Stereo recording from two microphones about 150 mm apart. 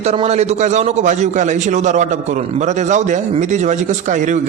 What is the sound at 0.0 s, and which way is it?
A man's voice, 45° right (ahead or behind).